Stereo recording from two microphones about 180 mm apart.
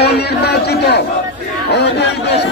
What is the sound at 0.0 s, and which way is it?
Chatter, 65° left (ahead or behind).